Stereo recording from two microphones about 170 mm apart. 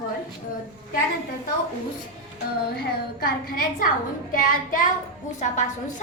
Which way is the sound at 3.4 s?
60° left (ahead or behind).